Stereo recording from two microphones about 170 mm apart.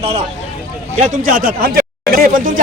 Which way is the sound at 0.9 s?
45° right (ahead or behind).